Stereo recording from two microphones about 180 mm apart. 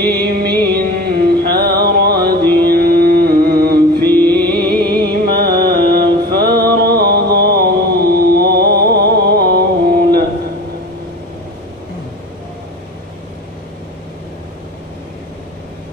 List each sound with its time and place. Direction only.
0.0 s music: 65° right (ahead or behind)
4.0 s music: 10° left (ahead or behind)
4.4 s music: 60° right (ahead or behind)